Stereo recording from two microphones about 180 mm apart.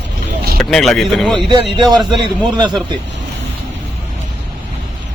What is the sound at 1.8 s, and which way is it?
A man's voice, 25° right (ahead or behind).